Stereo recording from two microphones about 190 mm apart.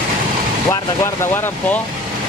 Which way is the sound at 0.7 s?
15° left (ahead or behind).